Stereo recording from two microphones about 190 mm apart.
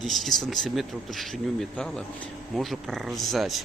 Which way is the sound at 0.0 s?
Centre (ahead or behind).